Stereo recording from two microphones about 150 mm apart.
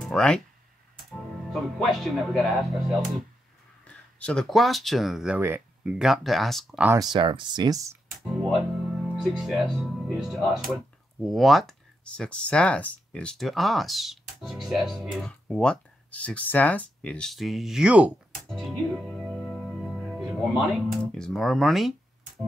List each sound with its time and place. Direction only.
0.0 s speech: 5° left (ahead or behind)
5.4 s speech: 15° right (ahead or behind)
5.9 s speech: centre (ahead or behind)
6.9 s speech: 25° right (ahead or behind)
8.2 s speech: centre (ahead or behind)
18.5 s music: centre (ahead or behind)